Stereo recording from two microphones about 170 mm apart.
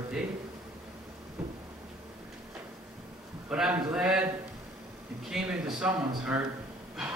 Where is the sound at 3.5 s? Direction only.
5° right (ahead or behind).